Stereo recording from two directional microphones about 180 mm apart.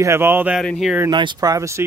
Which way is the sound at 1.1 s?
25° right (ahead or behind).